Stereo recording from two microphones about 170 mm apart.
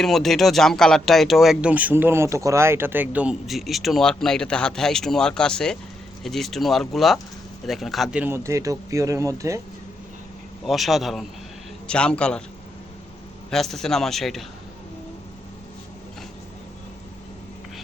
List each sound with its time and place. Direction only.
0.0 s speech: centre (ahead or behind); by 9.6 s 20° right (ahead or behind)
10.7 s speech: centre (ahead or behind)
13.5 s speech: centre (ahead or behind)